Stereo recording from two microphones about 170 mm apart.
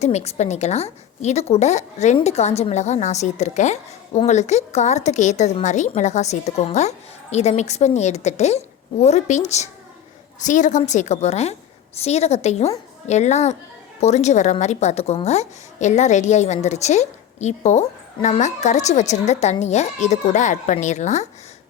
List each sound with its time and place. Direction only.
0.0 s a woman's voice: 40° left (ahead or behind)